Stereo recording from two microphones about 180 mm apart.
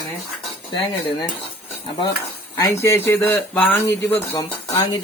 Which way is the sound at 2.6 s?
15° left (ahead or behind).